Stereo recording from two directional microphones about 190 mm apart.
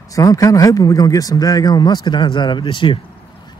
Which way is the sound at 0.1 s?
20° left (ahead or behind).